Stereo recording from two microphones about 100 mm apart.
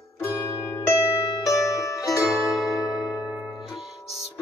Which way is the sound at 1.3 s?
40° left (ahead or behind).